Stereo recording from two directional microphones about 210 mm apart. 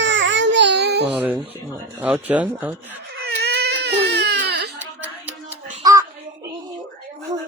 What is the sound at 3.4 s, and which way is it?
Baby cry, 50° right (ahead or behind).